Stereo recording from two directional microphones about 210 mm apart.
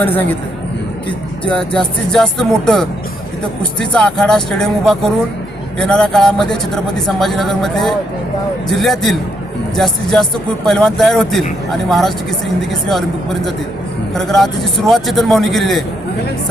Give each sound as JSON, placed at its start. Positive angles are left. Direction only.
{"t": 0.0, "sound": "speech", "side_deg": 10}
{"t": 1.5, "sound": "speech", "side_deg": 5}